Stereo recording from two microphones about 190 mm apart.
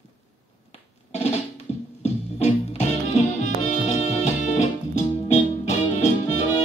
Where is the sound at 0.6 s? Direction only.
35° left (ahead or behind).